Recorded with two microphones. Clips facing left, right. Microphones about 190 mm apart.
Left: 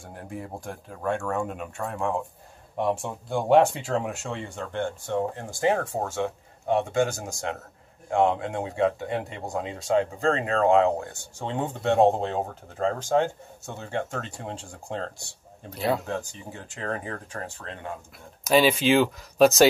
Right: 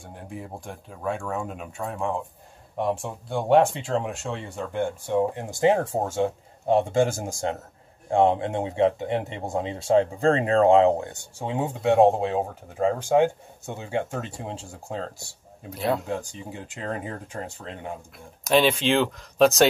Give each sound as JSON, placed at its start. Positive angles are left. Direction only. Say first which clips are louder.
{"t": 0.0, "sound": "speech", "louder": "left 1 dB", "side_deg": 0}
{"t": 11.3, "sound": "speech", "louder": "right 2 dB", "side_deg": -10}
{"t": 16.1, "sound": "speech", "louder": "right 1 dB", "side_deg": -15}
{"t": 18.4, "sound": "speech", "louder": "even", "side_deg": 5}